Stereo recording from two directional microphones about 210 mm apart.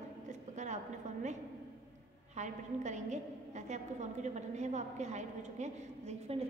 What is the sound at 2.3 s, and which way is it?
A woman's voice, 35° right (ahead or behind).